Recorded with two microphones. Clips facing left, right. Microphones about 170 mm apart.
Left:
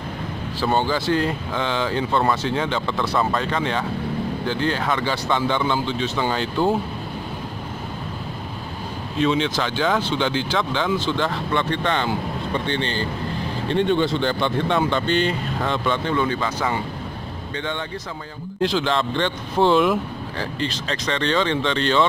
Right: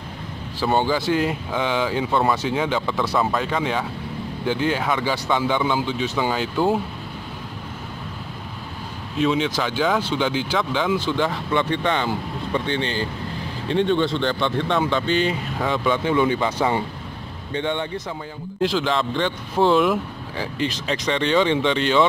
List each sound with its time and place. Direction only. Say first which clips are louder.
0.6 s speech: right 1 dB; 15° right (ahead or behind)
9.2 s speech: even; 5° right (ahead or behind); by 18.0 s 25° right (ahead or behind)
18.6 s speech: even; 5° right (ahead or behind)
20.5 s speech: right 5 dB; 10° right (ahead or behind)